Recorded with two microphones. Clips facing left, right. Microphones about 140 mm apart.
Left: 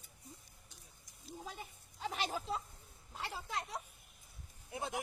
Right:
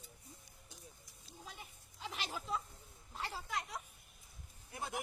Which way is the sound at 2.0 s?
50° left (ahead or behind).